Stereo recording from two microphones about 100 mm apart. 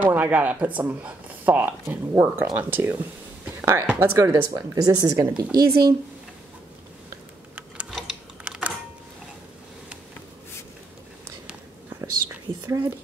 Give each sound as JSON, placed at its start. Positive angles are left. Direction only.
{"t": 0.0, "sound": "speech", "side_deg": -15}
{"t": 4.0, "sound": "speech", "side_deg": -30}
{"t": 8.5, "sound": "a sound", "side_deg": -10}
{"t": 12.6, "sound": "speech", "side_deg": -25}